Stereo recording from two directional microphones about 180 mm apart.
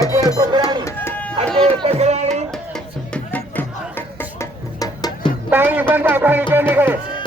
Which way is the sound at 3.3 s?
10° left (ahead or behind).